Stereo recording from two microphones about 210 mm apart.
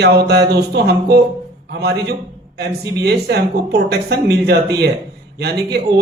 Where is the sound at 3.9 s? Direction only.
50° right (ahead or behind).